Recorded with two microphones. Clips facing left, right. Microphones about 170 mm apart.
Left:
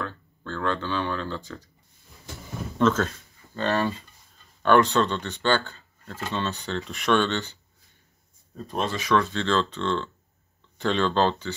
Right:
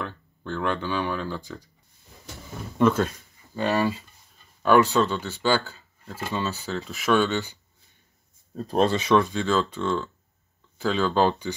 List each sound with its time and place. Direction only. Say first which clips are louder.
0.0 s speech: even; 15° right (ahead or behind)
2.8 s speech: right 1 dB; 10° right (ahead or behind)
8.5 s speech: right 7 dB; 35° right (ahead or behind)
8.9 s speech: right 3 dB; 20° right (ahead or behind)